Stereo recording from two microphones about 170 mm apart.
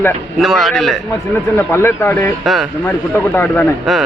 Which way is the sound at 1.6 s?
15° left (ahead or behind).